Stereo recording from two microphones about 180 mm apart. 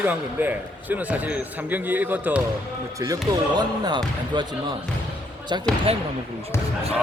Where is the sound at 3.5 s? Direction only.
20° right (ahead or behind).